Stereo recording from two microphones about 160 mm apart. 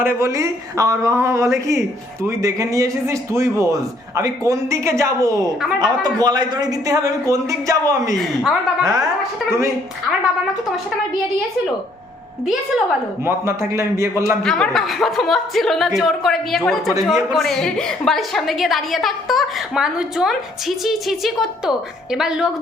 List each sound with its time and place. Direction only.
0.0 s a man's voice: 15° right (ahead or behind)
13.2 s a man's voice: 15° right (ahead or behind)
14.4 s a woman's voice: 5° left (ahead or behind)